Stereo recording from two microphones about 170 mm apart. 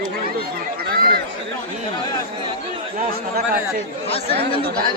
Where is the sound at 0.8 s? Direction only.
65° right (ahead or behind).